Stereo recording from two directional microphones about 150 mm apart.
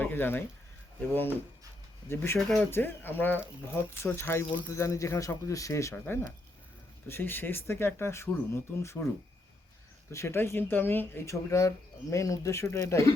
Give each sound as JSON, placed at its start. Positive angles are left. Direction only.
{"t": 0.0, "sound": "speech", "side_deg": 15}
{"t": 2.4, "sound": "speech", "side_deg": 5}
{"t": 2.6, "sound": "speech", "side_deg": 15}
{"t": 10.1, "sound": "speech", "side_deg": 20}